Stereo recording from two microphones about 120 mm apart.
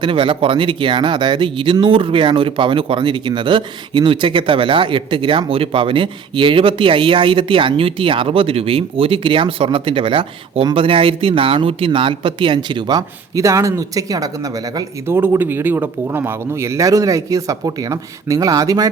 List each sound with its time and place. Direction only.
0.0 s speech: 45° right (ahead or behind); by 18.9 s 30° right (ahead or behind)